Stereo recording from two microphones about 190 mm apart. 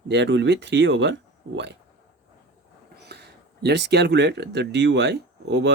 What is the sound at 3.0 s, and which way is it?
Speech, 60° right (ahead or behind).